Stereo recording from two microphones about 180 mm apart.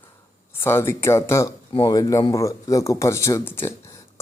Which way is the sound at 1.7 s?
25° left (ahead or behind).